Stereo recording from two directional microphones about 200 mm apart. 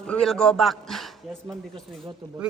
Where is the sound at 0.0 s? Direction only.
5° left (ahead or behind).